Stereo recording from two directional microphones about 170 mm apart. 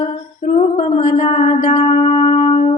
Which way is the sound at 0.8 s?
40° left (ahead or behind).